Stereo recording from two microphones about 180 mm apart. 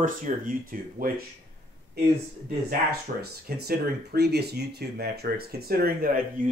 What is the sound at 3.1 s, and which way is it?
Speech, 55° right (ahead or behind).